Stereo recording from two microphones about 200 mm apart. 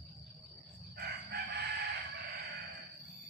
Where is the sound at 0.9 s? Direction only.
55° right (ahead or behind).